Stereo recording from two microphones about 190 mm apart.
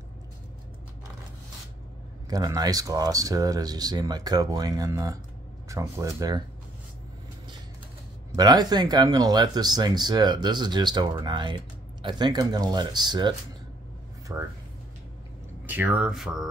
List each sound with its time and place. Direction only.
2.2 s speech: 20° right (ahead or behind)
5.7 s music: 15° right (ahead or behind)
8.4 s speech: 20° right (ahead or behind)
14.3 s music: 10° right (ahead or behind)
15.6 s music: 10° right (ahead or behind)